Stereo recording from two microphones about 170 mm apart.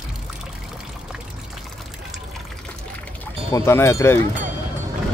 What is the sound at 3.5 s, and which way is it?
Speech, 15° left (ahead or behind).